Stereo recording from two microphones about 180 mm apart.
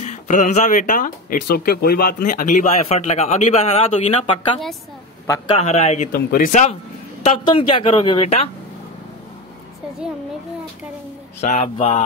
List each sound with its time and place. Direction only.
0.0 s speech: 40° left (ahead or behind)
5.6 s speech: 40° left (ahead or behind)
6.1 s speech: 50° left (ahead or behind)
7.4 s speech: 30° left (ahead or behind)
11.4 s speech: 35° left (ahead or behind)